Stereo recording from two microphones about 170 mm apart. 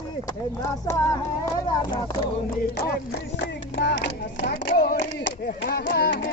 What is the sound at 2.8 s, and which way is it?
Speech, 75° left (ahead or behind).